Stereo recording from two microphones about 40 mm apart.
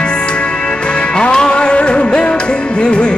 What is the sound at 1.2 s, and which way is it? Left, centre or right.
Music, left.